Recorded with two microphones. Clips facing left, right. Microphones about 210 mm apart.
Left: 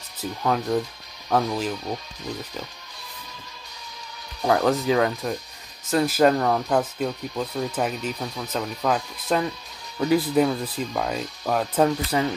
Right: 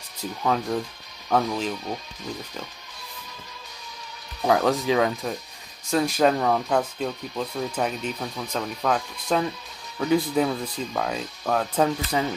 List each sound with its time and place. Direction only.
0.2 s speech: 5° left (ahead or behind)
4.4 s speech: centre (ahead or behind)